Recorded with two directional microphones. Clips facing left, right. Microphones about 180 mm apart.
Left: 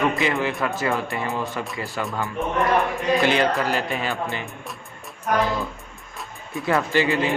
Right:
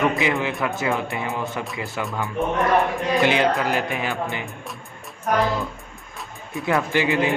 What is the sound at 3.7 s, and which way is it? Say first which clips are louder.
Speech: right 1 dB; 15° right (ahead or behind).